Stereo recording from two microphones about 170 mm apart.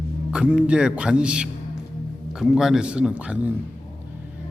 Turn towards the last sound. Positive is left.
turn(degrees=-5)  # may be behind; listen again after turning